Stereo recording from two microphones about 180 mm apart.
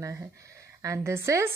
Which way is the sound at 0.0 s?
15° right (ahead or behind).